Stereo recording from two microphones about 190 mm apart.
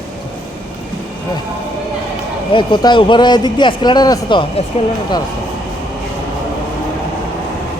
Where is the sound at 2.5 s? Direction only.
25° left (ahead or behind).